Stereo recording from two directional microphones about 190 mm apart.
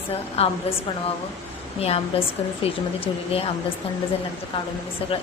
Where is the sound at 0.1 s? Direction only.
30° left (ahead or behind).